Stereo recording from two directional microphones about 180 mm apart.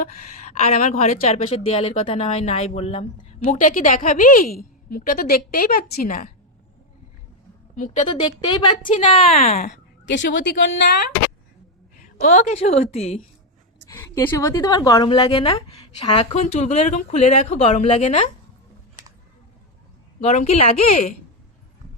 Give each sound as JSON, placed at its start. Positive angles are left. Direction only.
{"t": 0.4, "sound": "a woman's voice", "side_deg": 40}
{"t": 8.1, "sound": "a woman's voice", "side_deg": 25}
{"t": 10.1, "sound": "speech", "side_deg": 85}
{"t": 12.2, "sound": "a woman's voice", "side_deg": 40}
{"t": 13.8, "sound": "a woman's voice", "side_deg": 15}
{"t": 16.4, "sound": "a woman's voice", "side_deg": 40}
{"t": 20.2, "sound": "a woman's voice", "side_deg": 40}